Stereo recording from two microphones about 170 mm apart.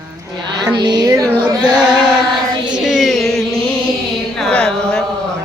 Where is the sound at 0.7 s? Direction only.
25° right (ahead or behind).